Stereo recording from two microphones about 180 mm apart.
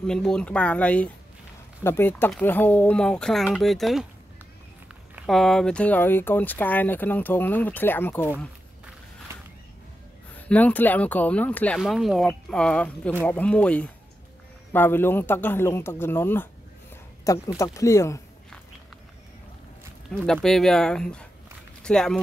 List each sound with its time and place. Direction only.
0.0 s speech: 5° left (ahead or behind)
5.1 s speech: centre (ahead or behind)
10.3 s speech: 10° left (ahead or behind)
16.9 s a sound: 20° left (ahead or behind)
17.6 s speech: 15° left (ahead or behind)
20.2 s speech: 5° left (ahead or behind)